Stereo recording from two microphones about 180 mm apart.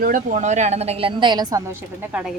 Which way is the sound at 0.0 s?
50° right (ahead or behind).